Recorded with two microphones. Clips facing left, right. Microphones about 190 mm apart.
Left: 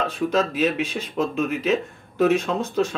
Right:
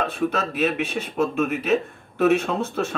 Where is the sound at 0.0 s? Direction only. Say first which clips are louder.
Left 2 dB; 60° right (ahead or behind).